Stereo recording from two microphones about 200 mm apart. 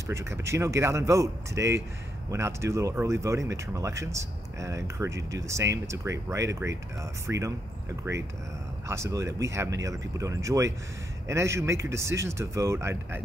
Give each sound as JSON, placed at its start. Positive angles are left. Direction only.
{"t": 0.0, "sound": "speech", "side_deg": -15}